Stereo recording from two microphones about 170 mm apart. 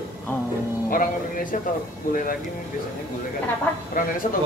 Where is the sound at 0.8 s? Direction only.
55° left (ahead or behind).